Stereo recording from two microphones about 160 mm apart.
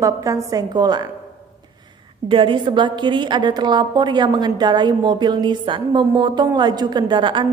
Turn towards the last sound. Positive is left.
turn(degrees=-30)  # may be behind; listen again after turning